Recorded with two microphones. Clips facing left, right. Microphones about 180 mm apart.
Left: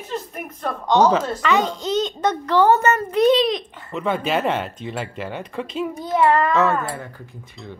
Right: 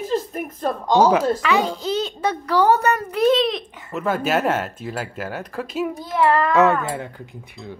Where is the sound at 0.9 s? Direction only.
10° right (ahead or behind).